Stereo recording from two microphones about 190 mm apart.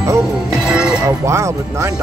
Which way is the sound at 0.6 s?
5° right (ahead or behind).